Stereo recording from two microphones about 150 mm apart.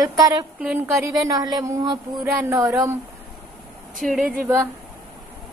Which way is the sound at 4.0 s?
Centre (ahead or behind).